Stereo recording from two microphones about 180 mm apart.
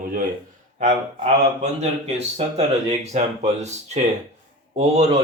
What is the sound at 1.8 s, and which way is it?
Speech, 35° right (ahead or behind).